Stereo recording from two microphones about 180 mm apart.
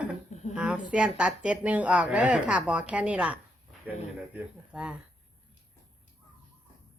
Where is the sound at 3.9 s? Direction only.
5° right (ahead or behind).